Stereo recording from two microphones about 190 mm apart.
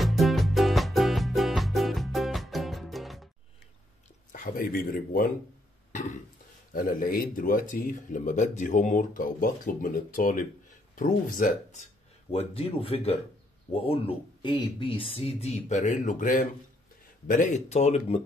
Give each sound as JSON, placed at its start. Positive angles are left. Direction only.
{"t": 0.0, "sound": "music", "side_deg": 0}
{"t": 4.3, "sound": "speech", "side_deg": 45}
{"t": 5.9, "sound": "burping", "side_deg": 40}
{"t": 6.7, "sound": "speech", "side_deg": 45}